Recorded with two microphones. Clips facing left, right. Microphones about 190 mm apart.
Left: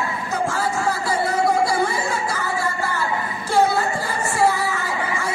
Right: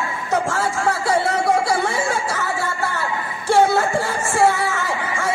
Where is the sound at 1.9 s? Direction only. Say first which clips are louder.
Right 2 dB; 80° right.